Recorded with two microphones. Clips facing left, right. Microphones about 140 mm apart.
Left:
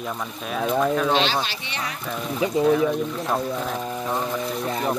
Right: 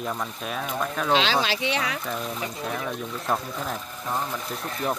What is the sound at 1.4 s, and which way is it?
Speech, 90° right.